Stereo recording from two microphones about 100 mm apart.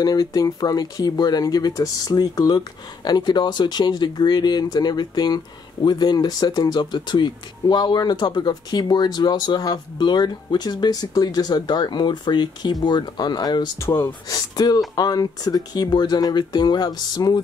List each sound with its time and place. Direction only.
0.0 s speech: 40° left (ahead or behind)